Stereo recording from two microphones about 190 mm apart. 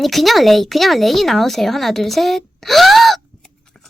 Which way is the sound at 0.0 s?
Centre (ahead or behind).